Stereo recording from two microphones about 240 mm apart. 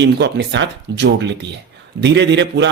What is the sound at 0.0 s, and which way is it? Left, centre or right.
Speech, right.